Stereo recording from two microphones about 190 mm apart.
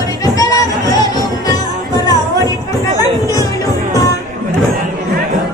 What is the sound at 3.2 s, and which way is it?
Music, 20° left (ahead or behind).